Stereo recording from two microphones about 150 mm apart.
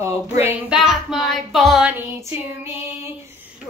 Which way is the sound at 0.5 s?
5° right (ahead or behind).